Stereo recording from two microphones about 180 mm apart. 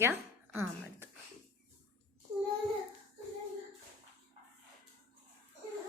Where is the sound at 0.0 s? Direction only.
10° right (ahead or behind).